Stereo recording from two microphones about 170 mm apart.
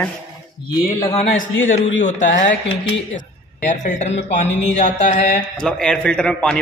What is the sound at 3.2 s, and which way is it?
Speech, 45° left (ahead or behind).